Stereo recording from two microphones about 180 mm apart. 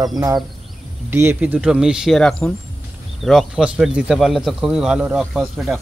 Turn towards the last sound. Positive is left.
turn(degrees=0)  # may be behind; listen again after turning